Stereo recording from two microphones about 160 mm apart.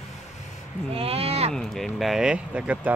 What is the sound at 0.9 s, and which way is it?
Speech, 40° right (ahead or behind).